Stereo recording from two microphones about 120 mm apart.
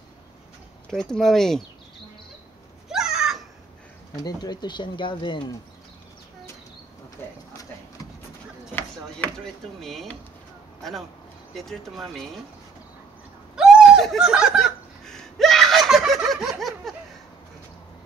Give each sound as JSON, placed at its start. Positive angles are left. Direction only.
{"t": 0.8, "sound": "speech", "side_deg": 5}
{"t": 2.9, "sound": "a sound", "side_deg": -5}
{"t": 4.2, "sound": "speech", "side_deg": 35}
{"t": 7.2, "sound": "speech", "side_deg": 20}
{"t": 9.4, "sound": "speech", "side_deg": 0}
{"t": 13.6, "sound": "snicker", "side_deg": -5}